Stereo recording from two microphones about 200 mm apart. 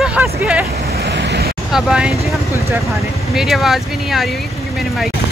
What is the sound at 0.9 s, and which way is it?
Vehicle, 55° right (ahead or behind).